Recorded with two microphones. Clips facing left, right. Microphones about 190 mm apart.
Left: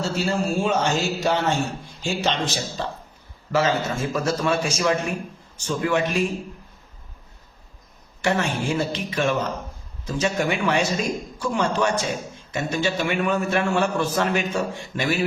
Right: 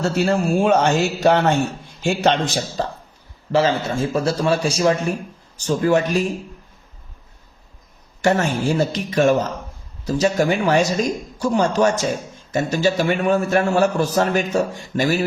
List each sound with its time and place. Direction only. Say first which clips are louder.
0.0 s a man's voice: right 5 dB; 60° right (ahead or behind)
2.8 s a man's voice: right 5 dB; 40° right (ahead or behind)
3.5 s a man's voice: right 3 dB; 30° right (ahead or behind)
8.2 s a man's voice: right 5 dB; 40° right (ahead or behind)